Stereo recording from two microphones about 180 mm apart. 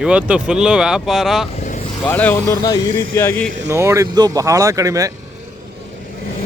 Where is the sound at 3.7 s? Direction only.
15° right (ahead or behind).